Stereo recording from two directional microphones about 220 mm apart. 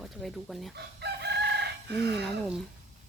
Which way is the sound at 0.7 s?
50° right (ahead or behind).